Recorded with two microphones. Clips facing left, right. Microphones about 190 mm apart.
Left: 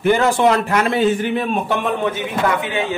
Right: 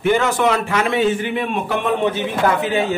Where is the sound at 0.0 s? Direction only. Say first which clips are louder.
Left 2 dB; 35° left (ahead or behind).